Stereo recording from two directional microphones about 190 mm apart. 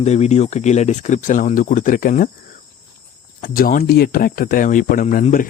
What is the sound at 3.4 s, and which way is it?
Speech, 50° left (ahead or behind).